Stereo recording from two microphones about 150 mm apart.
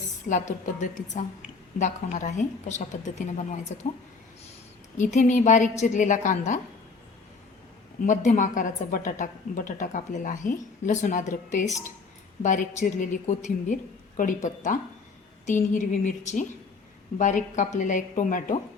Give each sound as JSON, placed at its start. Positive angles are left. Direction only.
{"t": 0.3, "sound": "a woman's voice", "side_deg": 55}
{"t": 4.9, "sound": "a woman's voice", "side_deg": 55}
{"t": 8.0, "sound": "a woman's voice", "side_deg": 55}